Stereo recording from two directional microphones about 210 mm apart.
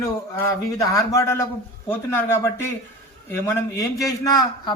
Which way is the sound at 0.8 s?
15° left (ahead or behind).